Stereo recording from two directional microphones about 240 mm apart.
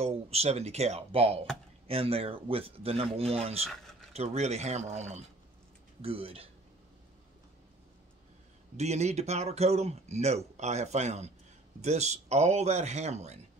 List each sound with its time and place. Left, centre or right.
0.0 s speech: right
8.7 s speech: right